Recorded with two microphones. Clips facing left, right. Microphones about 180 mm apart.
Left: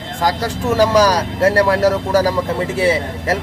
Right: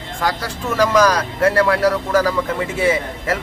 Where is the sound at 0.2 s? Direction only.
40° left (ahead or behind).